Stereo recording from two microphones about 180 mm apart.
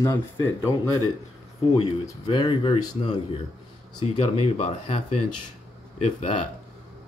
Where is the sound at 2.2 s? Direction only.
30° left (ahead or behind).